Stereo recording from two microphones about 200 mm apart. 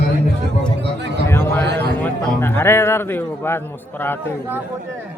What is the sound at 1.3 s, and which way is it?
A man's voice, 10° left (ahead or behind).